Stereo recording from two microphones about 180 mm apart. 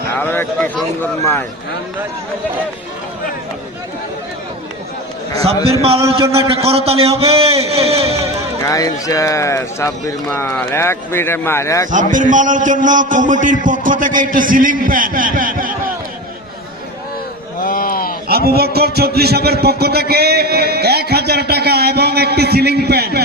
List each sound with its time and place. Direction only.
0.2 s speech: 10° left (ahead or behind)
5.3 s a man's voice: 35° right (ahead or behind)
8.6 s speech: 20° left (ahead or behind)
11.9 s a man's voice: 45° right (ahead or behind)
17.6 s a sound: 50° left (ahead or behind)
18.3 s a sound: 60° right (ahead or behind)